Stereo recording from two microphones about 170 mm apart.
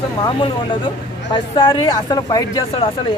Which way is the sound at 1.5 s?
30° left (ahead or behind).